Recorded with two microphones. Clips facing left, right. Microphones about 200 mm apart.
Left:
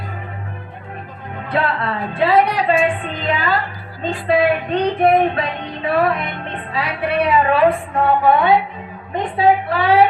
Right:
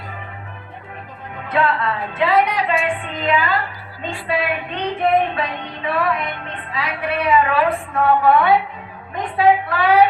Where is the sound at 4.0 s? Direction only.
35° left (ahead or behind).